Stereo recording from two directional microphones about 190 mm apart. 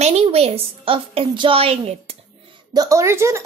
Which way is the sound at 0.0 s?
30° right (ahead or behind).